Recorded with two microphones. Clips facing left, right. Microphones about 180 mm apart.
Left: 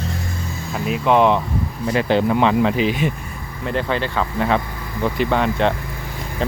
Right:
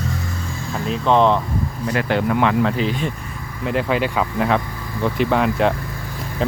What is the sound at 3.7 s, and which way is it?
Speech, 5° right (ahead or behind).